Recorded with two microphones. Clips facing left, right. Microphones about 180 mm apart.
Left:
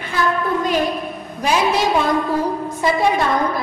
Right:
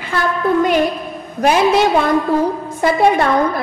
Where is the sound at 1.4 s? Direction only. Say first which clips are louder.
Right 5 dB; 60° right (ahead or behind).